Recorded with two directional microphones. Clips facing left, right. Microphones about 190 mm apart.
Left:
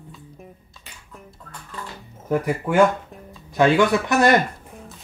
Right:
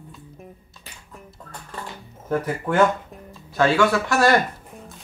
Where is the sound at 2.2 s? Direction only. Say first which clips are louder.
Left 2 dB; 10° left (ahead or behind).